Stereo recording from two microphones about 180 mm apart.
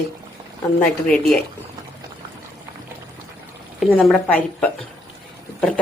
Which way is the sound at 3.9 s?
5° left (ahead or behind).